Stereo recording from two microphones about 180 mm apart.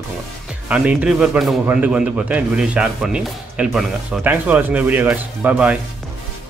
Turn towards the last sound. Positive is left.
turn(degrees=-5)  # may be behind; listen again after turning